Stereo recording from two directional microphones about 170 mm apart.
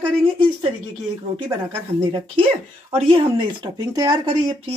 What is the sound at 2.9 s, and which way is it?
Speech, 30° right (ahead or behind).